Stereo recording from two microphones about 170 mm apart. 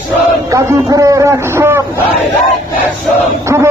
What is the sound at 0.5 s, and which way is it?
A man's voice, 20° right (ahead or behind).